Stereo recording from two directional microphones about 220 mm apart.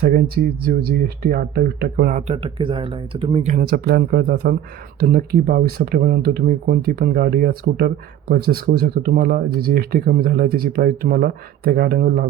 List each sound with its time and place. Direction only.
0.6 s speech: 45° right (ahead or behind)